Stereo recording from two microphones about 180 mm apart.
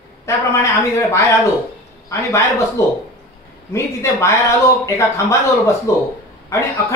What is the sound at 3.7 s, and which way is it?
A man's voice, 15° left (ahead or behind).